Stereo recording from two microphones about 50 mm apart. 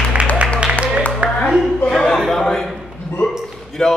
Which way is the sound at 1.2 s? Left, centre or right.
Right.